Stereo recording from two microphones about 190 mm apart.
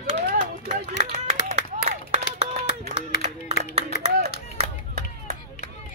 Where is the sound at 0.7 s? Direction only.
40° right (ahead or behind).